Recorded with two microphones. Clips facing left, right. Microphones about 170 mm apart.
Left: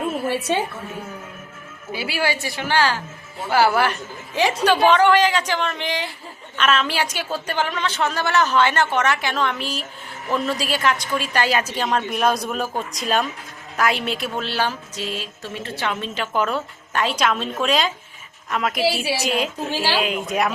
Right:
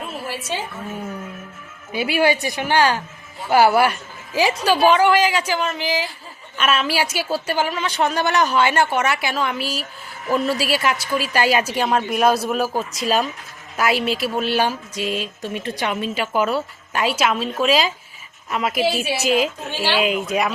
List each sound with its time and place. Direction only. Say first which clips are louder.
0.3 s a woman's voice: left 4 dB; 60° left (ahead or behind)
1.9 s speech: right 5 dB; 20° right (ahead or behind); by 20.5 s centre (ahead or behind)